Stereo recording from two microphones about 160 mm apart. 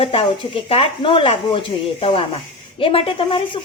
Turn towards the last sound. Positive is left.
turn(degrees=35)  # may be behind; listen again after turning